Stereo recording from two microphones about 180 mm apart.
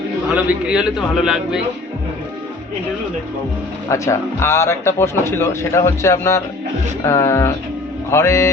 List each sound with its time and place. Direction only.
0.3 s a man's voice: 5° right (ahead or behind)
3.8 s a man's voice: 15° left (ahead or behind)